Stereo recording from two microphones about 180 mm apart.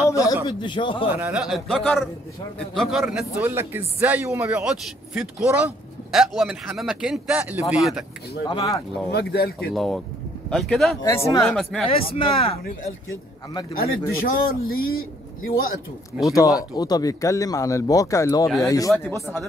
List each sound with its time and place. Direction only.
0.5 s speech: 25° left (ahead or behind)
1.1 s a man's voice: 5° right (ahead or behind)
8.5 s speech: 20° left (ahead or behind)
9.1 s speech: 65° left (ahead or behind)
9.8 s speech: centre (ahead or behind)
11.0 s speech: 15° left (ahead or behind)
11.4 s speech: 5° left (ahead or behind)
12.0 s speech: 30° left (ahead or behind)
13.7 s a man's voice: 55° left (ahead or behind)
16.3 s speech: 20° left (ahead or behind)